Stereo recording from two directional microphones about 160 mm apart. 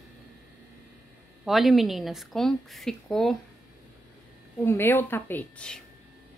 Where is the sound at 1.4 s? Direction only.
Centre (ahead or behind).